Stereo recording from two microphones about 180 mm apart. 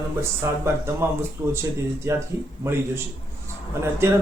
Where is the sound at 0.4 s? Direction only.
15° right (ahead or behind).